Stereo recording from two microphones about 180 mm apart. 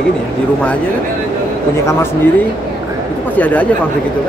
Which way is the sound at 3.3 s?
10° left (ahead or behind).